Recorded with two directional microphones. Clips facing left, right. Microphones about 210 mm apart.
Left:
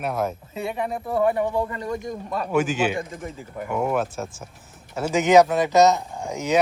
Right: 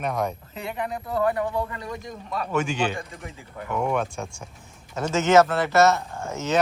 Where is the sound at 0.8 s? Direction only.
25° left (ahead or behind).